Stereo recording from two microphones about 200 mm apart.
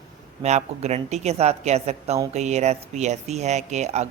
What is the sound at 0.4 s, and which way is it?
A woman's voice, 35° right (ahead or behind).